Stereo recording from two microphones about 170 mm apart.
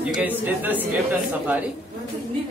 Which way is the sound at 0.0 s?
5° right (ahead or behind).